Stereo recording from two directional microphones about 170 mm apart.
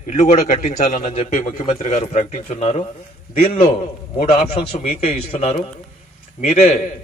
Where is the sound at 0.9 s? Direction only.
35° left (ahead or behind).